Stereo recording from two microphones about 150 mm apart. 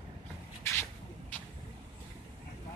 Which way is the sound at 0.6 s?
15° left (ahead or behind).